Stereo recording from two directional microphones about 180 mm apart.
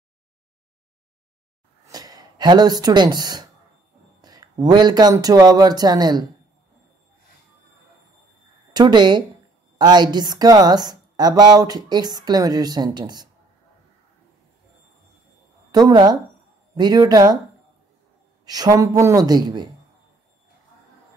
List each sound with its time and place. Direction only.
1.9 s speech: 20° right (ahead or behind)
8.7 s a woman's voice: 25° right (ahead or behind)
15.7 s a woman's voice: 20° right (ahead or behind)
18.4 s a woman's voice: 20° right (ahead or behind)